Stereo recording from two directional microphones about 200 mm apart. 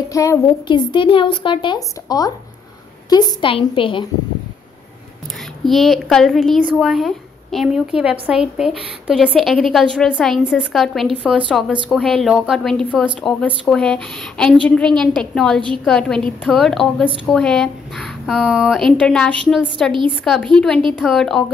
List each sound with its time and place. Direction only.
0.1 s a woman's voice: 15° left (ahead or behind)
5.6 s speech: centre (ahead or behind)